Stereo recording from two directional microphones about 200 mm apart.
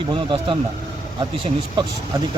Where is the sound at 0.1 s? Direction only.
25° right (ahead or behind).